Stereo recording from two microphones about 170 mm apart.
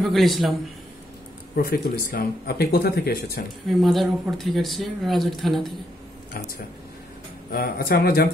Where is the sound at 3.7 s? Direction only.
Centre (ahead or behind).